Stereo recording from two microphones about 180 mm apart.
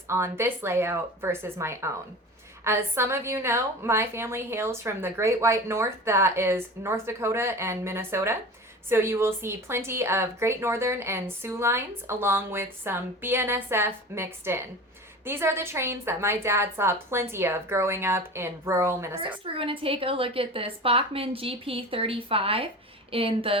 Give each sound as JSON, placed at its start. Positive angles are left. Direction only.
{"t": 0.1, "sound": "a woman's voice", "side_deg": -15}
{"t": 19.2, "sound": "a woman's voice", "side_deg": -30}